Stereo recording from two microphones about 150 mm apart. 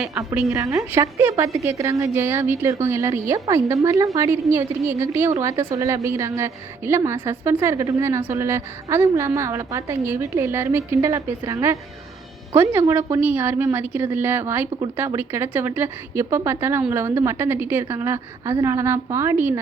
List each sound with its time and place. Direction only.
0.3 s a woman's voice: 15° right (ahead or behind)